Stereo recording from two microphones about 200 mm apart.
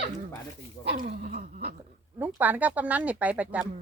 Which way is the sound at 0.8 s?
40° right (ahead or behind).